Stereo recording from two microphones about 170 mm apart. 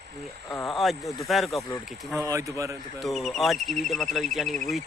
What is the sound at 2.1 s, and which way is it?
Speech, 20° right (ahead or behind).